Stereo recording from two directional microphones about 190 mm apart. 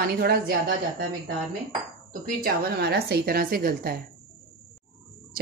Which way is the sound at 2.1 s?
50° right (ahead or behind).